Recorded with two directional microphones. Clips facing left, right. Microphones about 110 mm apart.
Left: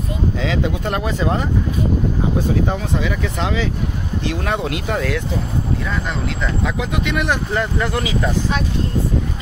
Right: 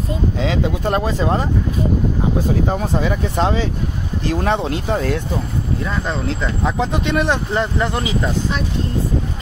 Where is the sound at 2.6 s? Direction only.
40° right (ahead or behind).